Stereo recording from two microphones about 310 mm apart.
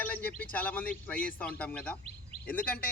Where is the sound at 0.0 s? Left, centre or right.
Centre.